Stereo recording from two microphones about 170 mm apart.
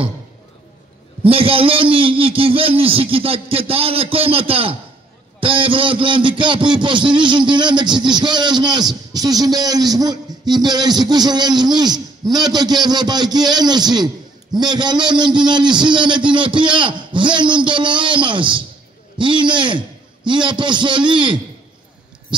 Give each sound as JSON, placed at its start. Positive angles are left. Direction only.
{"t": 1.2, "sound": "a man's voice", "side_deg": -35}